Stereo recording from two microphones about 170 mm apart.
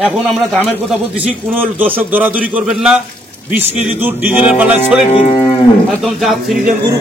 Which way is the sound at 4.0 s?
10° right (ahead or behind).